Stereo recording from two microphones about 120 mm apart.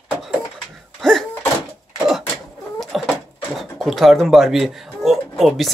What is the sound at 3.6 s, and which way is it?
Speech, centre (ahead or behind).